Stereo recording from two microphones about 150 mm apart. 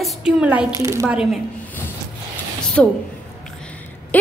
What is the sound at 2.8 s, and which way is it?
Speech, 5° left (ahead or behind).